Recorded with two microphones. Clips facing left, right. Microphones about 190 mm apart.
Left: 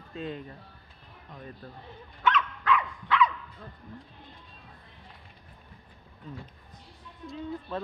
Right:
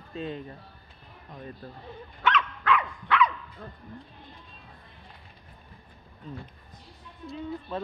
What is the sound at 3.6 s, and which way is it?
Speech, 55° right (ahead or behind).